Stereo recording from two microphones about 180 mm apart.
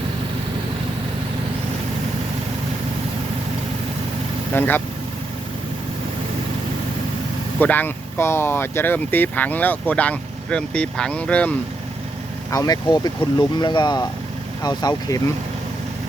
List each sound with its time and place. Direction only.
4.5 s speech: 10° left (ahead or behind)
7.6 s speech: 10° left (ahead or behind)
12.5 s speech: 20° left (ahead or behind)